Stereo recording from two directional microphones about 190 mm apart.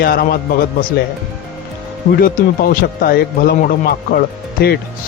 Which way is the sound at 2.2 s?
50° left (ahead or behind).